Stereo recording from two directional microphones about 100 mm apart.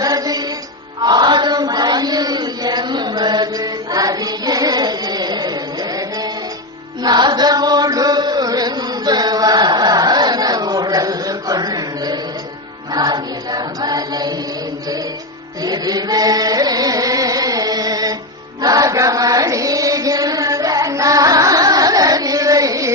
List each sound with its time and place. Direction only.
0.0 s music: 40° right (ahead or behind)
1.0 s chant: 45° right (ahead or behind)
12.9 s music: 45° right (ahead or behind)
15.6 s music: 40° right (ahead or behind)
18.6 s chant: 35° right (ahead or behind)